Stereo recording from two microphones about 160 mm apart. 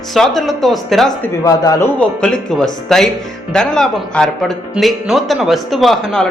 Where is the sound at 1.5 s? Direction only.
20° left (ahead or behind).